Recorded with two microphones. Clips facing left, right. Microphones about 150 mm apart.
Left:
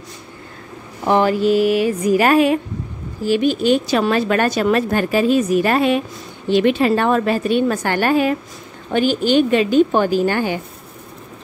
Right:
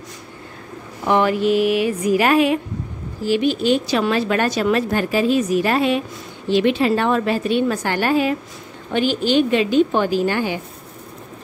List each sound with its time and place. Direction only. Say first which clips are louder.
1.0 s a woman's voice: left 2 dB; 35° left (ahead or behind)